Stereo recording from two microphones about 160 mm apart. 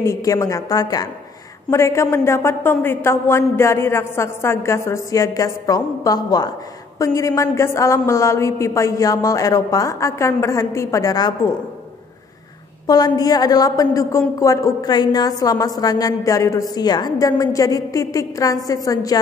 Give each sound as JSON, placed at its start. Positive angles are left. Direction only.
{"t": 0.0, "sound": "a woman's voice", "side_deg": 20}
{"t": 12.8, "sound": "a woman's voice", "side_deg": 25}